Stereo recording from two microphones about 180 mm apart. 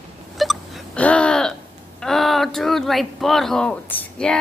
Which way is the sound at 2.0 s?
Centre (ahead or behind).